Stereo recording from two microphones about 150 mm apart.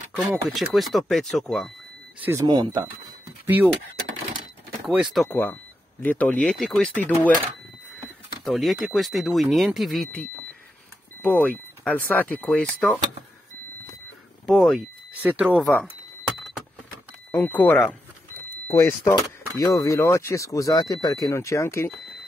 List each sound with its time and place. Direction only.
0.5 s speech: centre (ahead or behind)
2.1 s speech: 15° right (ahead or behind)
2.4 s speech: 30° right (ahead or behind)
3.4 s speech: 10° right (ahead or behind)
4.8 s speech: 5° right (ahead or behind)
5.3 s speech: 10° left (ahead or behind)
8.5 s speech: centre (ahead or behind)
14.4 s speech: centre (ahead or behind)
17.3 s speech: 15° left (ahead or behind)